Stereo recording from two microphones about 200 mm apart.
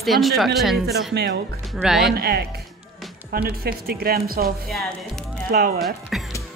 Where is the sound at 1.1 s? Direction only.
55° right (ahead or behind).